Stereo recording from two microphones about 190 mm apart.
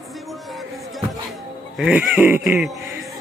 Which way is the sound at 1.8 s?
5° right (ahead or behind).